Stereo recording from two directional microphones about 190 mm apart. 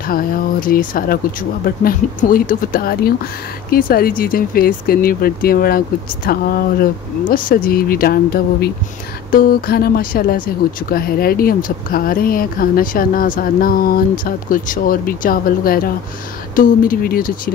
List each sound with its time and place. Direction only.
0.0 s speech: 50° left (ahead or behind)